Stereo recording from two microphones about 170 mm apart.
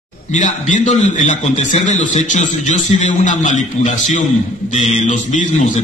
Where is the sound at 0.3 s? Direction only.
45° left (ahead or behind).